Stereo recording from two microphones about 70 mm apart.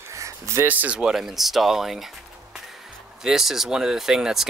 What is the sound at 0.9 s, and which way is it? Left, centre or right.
Speech, centre.